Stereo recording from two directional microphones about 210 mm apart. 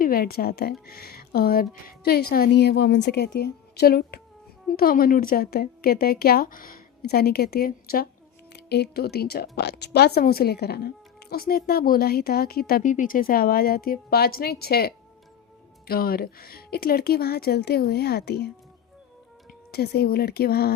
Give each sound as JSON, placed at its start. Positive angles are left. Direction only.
{"t": 0.0, "sound": "speech", "side_deg": 45}